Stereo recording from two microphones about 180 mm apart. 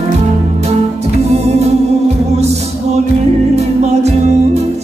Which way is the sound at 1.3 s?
35° right (ahead or behind).